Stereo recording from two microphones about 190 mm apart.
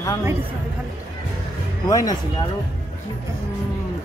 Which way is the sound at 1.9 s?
20° left (ahead or behind).